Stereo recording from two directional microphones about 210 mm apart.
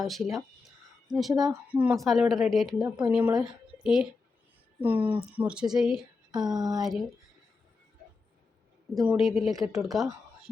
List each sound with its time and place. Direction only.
0.0 s a woman's voice: centre (ahead or behind)
6.5 s speech: 20° right (ahead or behind)
6.7 s a woman's voice: centre (ahead or behind)
9.0 s a woman's voice: centre (ahead or behind)